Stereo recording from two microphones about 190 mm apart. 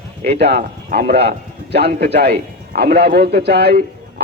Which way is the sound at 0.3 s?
60° right (ahead or behind).